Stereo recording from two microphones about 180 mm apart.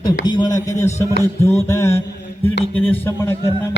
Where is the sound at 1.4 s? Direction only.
15° left (ahead or behind).